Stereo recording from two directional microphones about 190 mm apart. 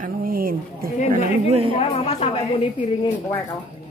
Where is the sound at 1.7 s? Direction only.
35° left (ahead or behind).